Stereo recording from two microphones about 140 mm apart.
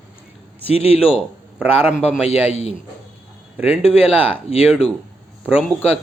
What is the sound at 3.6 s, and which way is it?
Speech, 10° right (ahead or behind).